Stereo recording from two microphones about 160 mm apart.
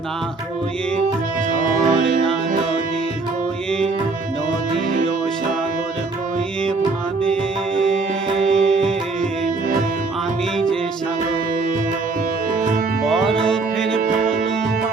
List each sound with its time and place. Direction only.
1.5 s music: 55° right (ahead or behind)
7.8 s music: 5° left (ahead or behind)
13.1 s music: centre (ahead or behind)
14.0 s music: 60° right (ahead or behind)